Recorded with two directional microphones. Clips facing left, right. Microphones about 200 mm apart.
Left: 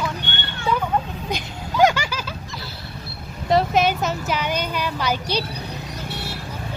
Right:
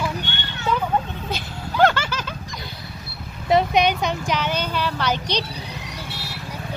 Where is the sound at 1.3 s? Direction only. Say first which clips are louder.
Left 1 dB; 10° left (ahead or behind).